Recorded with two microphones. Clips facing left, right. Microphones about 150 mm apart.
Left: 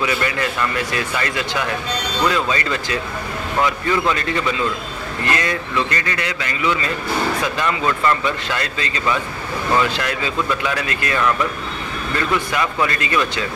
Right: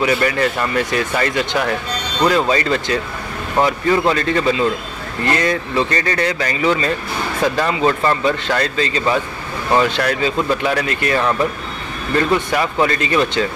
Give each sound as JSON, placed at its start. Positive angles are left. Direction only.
{"t": 0.0, "sound": "speech", "side_deg": -30}